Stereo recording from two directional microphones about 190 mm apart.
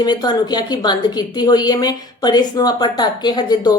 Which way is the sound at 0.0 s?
20° left (ahead or behind).